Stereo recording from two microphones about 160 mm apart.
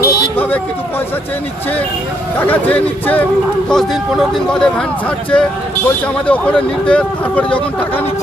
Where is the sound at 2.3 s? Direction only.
10° left (ahead or behind).